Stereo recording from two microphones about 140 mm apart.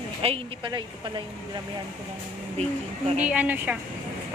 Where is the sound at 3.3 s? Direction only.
10° right (ahead or behind).